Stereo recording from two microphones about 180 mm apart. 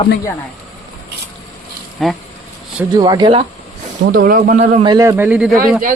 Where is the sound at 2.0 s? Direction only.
Centre (ahead or behind).